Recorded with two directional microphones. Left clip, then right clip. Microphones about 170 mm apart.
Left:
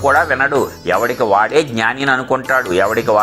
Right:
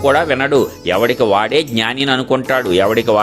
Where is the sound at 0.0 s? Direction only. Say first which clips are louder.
Left 1 dB; 55° right (ahead or behind).